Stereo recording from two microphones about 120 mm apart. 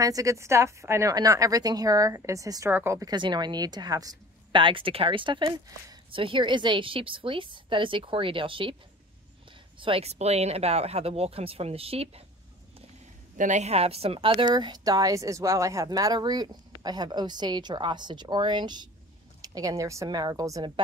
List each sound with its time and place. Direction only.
0.0 s a woman's voice: 30° right (ahead or behind)
3.1 s a woman's voice: 35° right (ahead or behind)
9.8 s speech: 50° right (ahead or behind)
13.4 s speech: 80° right; by 14.3 s 55° right (ahead or behind)
14.3 s a woman's voice: 35° right (ahead or behind)